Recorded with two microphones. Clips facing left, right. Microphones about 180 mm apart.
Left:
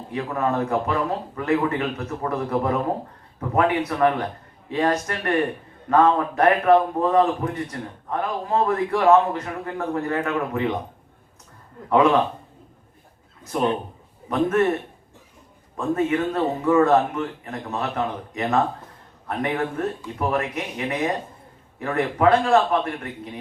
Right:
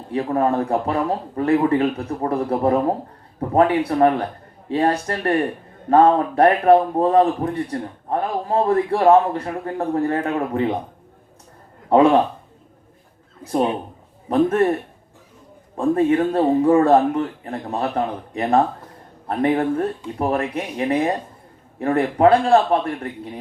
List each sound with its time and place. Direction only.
0.1 s a man's voice: 30° right (ahead or behind)
11.9 s a man's voice: 30° right (ahead or behind)
14.3 s a man's voice: 30° right (ahead or behind)
15.8 s a man's voice: 30° right (ahead or behind)